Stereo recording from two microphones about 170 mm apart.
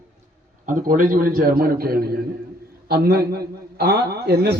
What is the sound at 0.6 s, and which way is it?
A man's voice, 50° right (ahead or behind).